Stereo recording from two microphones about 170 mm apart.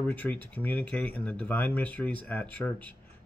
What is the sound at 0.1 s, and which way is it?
Speech, 10° left (ahead or behind).